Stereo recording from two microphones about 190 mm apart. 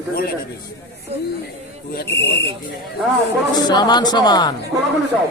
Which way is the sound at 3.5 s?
20° left (ahead or behind).